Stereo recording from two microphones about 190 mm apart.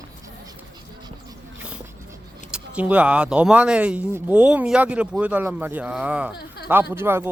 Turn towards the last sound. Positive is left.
turn(degrees=-10)  # may be behind; listen again after turning